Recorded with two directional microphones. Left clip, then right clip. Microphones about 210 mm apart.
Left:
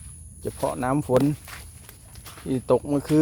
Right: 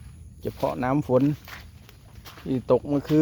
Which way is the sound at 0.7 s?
Centre (ahead or behind).